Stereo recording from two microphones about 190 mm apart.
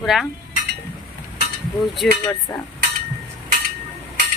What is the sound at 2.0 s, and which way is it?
Speech, 5° left (ahead or behind).